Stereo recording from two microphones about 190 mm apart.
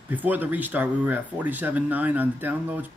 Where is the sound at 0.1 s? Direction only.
10° right (ahead or behind).